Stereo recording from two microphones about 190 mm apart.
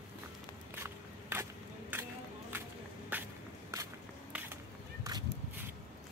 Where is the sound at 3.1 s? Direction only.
10° right (ahead or behind).